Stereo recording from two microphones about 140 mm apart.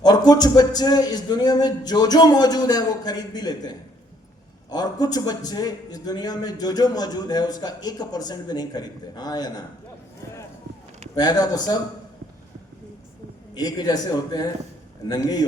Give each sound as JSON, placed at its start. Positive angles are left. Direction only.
{"t": 0.0, "sound": "a man's voice", "side_deg": 30}
{"t": 11.1, "sound": "a man's voice", "side_deg": 30}
{"t": 13.5, "sound": "a man's voice", "side_deg": 30}